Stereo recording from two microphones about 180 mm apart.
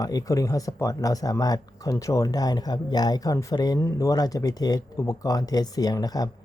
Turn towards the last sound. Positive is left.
turn(degrees=20)  # may be behind; listen again after turning